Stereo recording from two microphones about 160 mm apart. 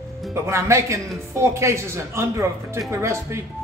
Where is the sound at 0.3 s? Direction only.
15° right (ahead or behind).